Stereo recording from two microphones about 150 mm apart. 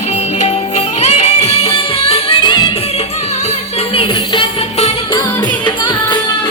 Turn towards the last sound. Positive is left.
turn(degrees=40)  # may be behind; listen again after turning